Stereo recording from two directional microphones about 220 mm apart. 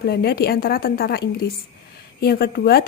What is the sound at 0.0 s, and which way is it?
A woman's voice, 45° left (ahead or behind).